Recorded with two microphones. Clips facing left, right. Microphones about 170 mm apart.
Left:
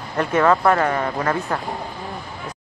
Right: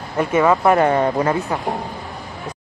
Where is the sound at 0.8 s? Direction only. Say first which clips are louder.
Right 5 dB; 25° right (ahead or behind).